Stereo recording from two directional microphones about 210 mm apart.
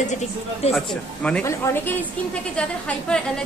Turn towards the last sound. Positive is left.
turn(degrees=5)  # may be behind; listen again after turning